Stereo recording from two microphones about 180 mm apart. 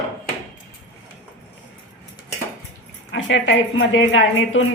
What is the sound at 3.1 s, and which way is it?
A woman's voice, 90° left.